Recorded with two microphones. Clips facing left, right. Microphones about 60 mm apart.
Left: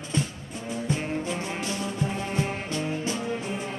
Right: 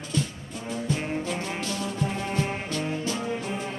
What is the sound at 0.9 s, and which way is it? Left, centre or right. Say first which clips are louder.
Music: even; left.